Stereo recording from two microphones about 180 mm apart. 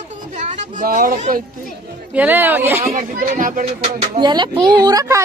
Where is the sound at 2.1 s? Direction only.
10° right (ahead or behind).